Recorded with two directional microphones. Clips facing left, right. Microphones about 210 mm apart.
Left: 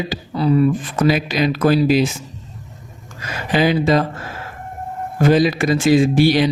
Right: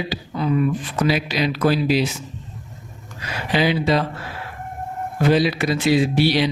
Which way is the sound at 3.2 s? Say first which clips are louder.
Left 3 dB; 45° left (ahead or behind).